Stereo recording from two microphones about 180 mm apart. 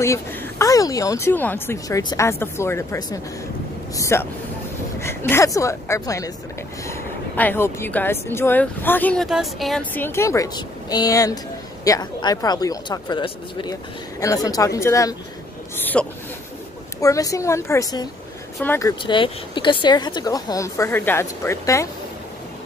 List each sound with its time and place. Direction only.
0.0 s speech: 15° left (ahead or behind)